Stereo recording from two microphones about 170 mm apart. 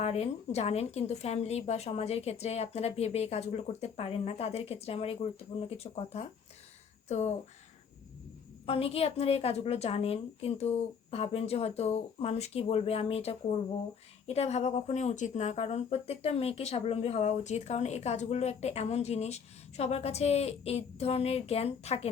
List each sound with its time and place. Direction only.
0.0 s speech: 40° left (ahead or behind)
8.6 s speech: 35° left (ahead or behind)